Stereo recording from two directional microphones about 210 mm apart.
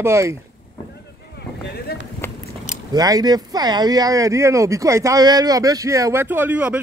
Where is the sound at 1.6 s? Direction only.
50° left (ahead or behind).